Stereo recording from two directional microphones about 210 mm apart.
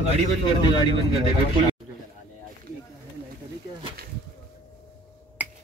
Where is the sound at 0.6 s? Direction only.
20° left (ahead or behind).